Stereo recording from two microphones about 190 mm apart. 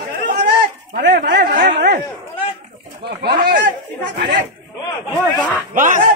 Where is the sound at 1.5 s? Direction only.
45° right (ahead or behind).